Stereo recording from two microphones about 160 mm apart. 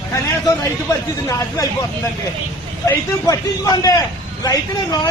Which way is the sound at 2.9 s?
20° left (ahead or behind).